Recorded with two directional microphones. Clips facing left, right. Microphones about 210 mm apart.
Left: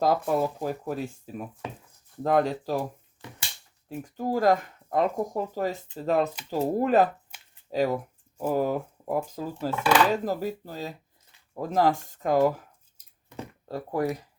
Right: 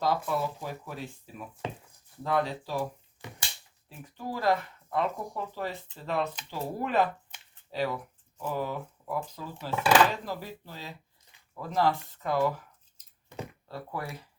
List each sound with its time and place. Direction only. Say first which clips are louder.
0.0 s speech: left 5 dB; 45° left (ahead or behind)
2.2 s speech: left 6 dB; 45° left (ahead or behind)
3.8 s speech: left 8 dB; 45° left (ahead or behind)
13.7 s speech: left 12 dB; 40° left (ahead or behind)